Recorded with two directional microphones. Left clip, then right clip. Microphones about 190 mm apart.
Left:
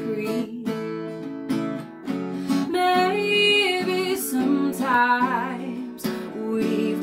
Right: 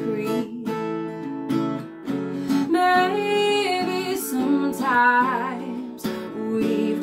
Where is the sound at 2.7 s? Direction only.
Centre (ahead or behind).